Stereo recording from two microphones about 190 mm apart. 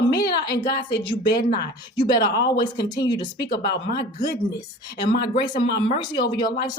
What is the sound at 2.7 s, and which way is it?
Speech, 20° left (ahead or behind).